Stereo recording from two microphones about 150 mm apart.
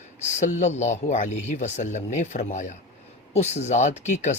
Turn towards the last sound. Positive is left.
turn(degrees=50)  # may be behind; listen again after turning